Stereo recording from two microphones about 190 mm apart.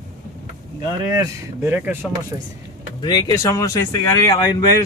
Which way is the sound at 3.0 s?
20° left (ahead or behind).